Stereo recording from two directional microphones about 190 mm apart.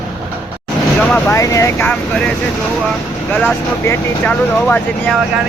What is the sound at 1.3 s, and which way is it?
Speech, 15° left (ahead or behind).